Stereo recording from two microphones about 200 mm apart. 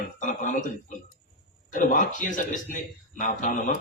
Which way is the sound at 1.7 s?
40° left (ahead or behind).